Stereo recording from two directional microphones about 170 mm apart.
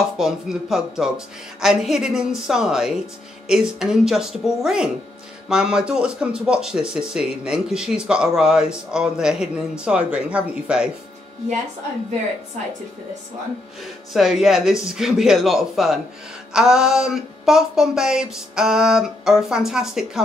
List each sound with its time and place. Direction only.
0.2 s speech: 5° right (ahead or behind)
14.1 s speech: centre (ahead or behind)